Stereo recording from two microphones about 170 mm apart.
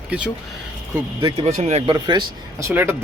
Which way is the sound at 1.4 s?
40° right (ahead or behind).